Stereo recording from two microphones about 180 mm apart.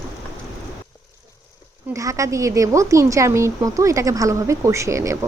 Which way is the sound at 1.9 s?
15° right (ahead or behind).